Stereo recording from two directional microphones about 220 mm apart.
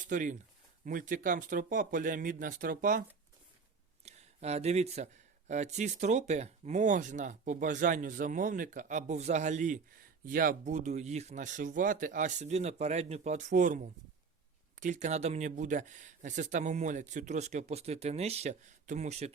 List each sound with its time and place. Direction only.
0.1 s speech: 35° right (ahead or behind)
4.0 s speech: 30° right (ahead or behind)